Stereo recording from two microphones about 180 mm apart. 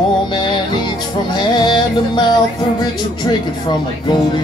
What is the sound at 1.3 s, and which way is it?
Music, 25° left (ahead or behind).